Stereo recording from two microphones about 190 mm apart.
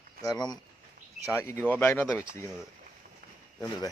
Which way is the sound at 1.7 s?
10° left (ahead or behind).